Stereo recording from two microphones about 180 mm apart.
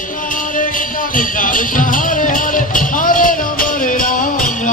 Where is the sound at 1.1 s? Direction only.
50° left (ahead or behind).